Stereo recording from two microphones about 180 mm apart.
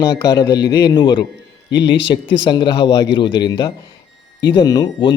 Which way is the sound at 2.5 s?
25° left (ahead or behind).